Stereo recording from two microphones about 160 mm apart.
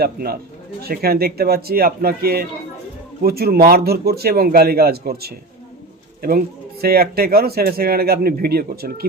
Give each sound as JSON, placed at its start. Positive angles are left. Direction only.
{"t": 0.0, "sound": "a man's voice", "side_deg": -70}
{"t": 6.8, "sound": "a man's voice", "side_deg": -75}